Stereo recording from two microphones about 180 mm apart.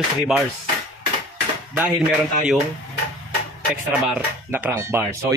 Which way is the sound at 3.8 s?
10° right (ahead or behind).